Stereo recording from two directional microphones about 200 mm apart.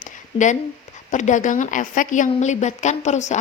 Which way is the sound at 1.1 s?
40° left (ahead or behind).